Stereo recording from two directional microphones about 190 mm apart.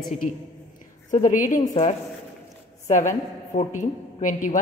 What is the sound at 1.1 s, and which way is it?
Speech, 45° left (ahead or behind).